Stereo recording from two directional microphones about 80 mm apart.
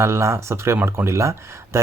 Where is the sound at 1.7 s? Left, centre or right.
Right.